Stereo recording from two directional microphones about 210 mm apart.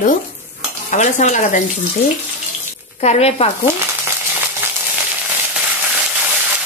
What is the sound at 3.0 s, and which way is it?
Speech, 30° left (ahead or behind).